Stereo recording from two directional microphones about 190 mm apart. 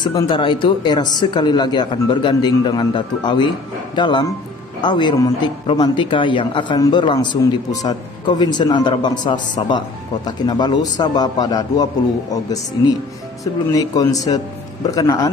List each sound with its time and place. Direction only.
0.0 s speech: 25° left (ahead or behind)